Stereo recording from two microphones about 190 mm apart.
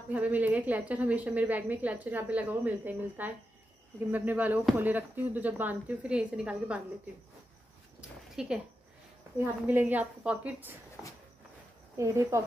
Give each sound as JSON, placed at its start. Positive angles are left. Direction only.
{"t": 0.1, "sound": "a woman's voice", "side_deg": -10}
{"t": 8.4, "sound": "a woman's voice", "side_deg": -5}
{"t": 12.0, "sound": "a woman's voice", "side_deg": -15}